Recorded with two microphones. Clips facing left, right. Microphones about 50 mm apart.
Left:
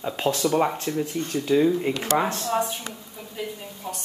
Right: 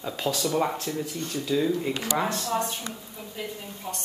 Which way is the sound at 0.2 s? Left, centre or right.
Left.